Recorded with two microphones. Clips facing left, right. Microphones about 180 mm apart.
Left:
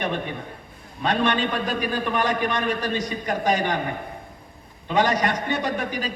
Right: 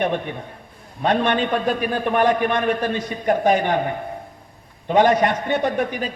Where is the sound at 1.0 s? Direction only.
55° right (ahead or behind).